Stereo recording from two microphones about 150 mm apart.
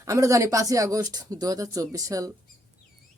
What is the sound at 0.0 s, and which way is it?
Speech, 20° right (ahead or behind).